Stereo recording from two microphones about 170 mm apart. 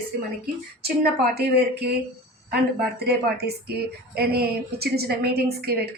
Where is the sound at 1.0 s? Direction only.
65° right (ahead or behind).